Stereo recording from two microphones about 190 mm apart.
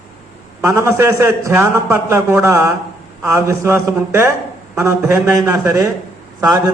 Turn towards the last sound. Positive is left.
turn(degrees=-20)  # may be behind; listen again after turning